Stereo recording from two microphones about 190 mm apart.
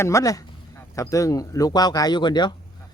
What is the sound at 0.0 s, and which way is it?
Speech, 15° left (ahead or behind).